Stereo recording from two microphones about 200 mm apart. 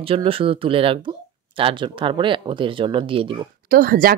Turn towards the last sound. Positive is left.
turn(degrees=-45)  # may be behind; listen again after turning